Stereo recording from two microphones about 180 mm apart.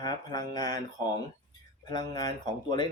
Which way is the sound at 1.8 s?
20° left (ahead or behind).